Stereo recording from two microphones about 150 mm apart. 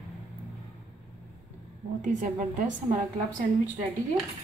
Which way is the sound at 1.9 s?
55° right (ahead or behind).